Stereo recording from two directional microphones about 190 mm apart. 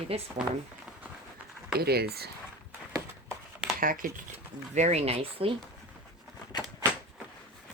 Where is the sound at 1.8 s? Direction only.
55° right (ahead or behind).